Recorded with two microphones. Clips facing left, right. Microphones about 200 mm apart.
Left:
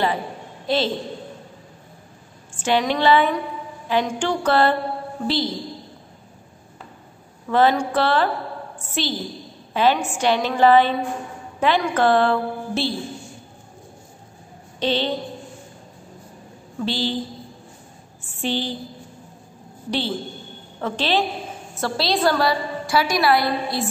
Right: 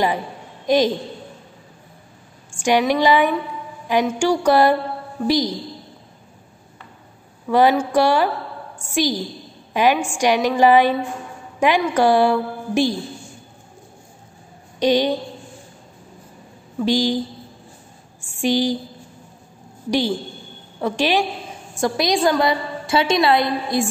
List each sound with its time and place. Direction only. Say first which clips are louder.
0.7 s a woman's voice: right 5 dB; 15° right (ahead or behind)
2.5 s a woman's voice: right 3 dB; 10° right (ahead or behind)
7.4 s a woman's voice: right 2 dB; 10° right (ahead or behind)
8.7 s a sound: right 7 dB; 10° right (ahead or behind)
9.8 s a woman's voice: right 2 dB; 10° right (ahead or behind)
14.8 s a woman's voice: right 5 dB; 15° right (ahead or behind)
16.8 s a woman's voice: right 6 dB; 15° right (ahead or behind)
18.2 s a woman's voice: right 6 dB; 10° right (ahead or behind)
19.9 s a woman's voice: right 5 dB; 15° right (ahead or behind)